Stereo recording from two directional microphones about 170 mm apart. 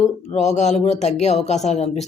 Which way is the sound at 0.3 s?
40° left (ahead or behind).